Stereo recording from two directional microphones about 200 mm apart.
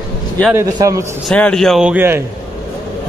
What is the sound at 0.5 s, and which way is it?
Speech, 15° right (ahead or behind).